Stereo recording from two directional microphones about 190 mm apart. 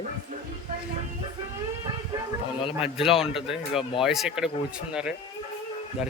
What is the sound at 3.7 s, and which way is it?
Speech, 30° left (ahead or behind).